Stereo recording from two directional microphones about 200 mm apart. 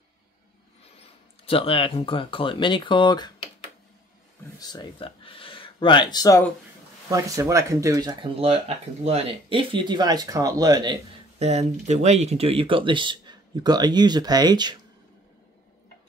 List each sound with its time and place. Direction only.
0.9 s speech: 30° left (ahead or behind)
4.6 s speech: 25° left (ahead or behind)
7.1 s speech: 15° right (ahead or behind)
11.8 s speech: 35° right (ahead or behind)